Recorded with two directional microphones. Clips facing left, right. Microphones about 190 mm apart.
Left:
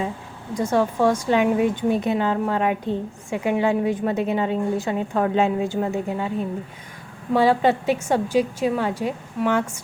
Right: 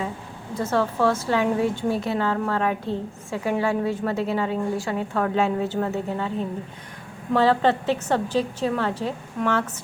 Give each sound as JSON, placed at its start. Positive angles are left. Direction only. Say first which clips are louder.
{"t": 0.5, "sound": "a woman's voice", "louder": "left 3 dB", "side_deg": 15}
{"t": 7.3, "sound": "a woman's voice", "louder": "left 1 dB", "side_deg": 10}